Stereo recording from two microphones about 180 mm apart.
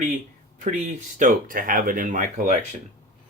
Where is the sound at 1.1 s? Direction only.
50° right (ahead or behind).